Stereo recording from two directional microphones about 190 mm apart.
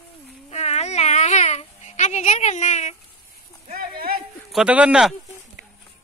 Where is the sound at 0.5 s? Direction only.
35° left (ahead or behind).